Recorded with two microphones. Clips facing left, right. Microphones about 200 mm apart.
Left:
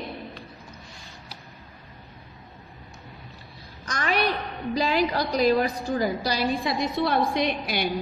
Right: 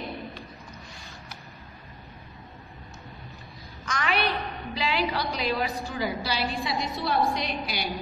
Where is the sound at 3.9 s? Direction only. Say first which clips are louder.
Left 2 dB; 40° left (ahead or behind).